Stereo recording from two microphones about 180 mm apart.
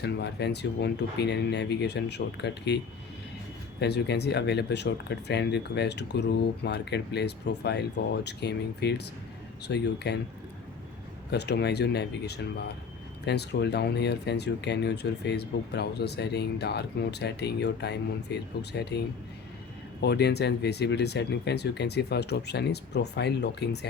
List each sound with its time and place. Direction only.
0.0 s speech: 65° left (ahead or behind)
3.8 s speech: 70° left (ahead or behind)
11.3 s speech: 65° left (ahead or behind)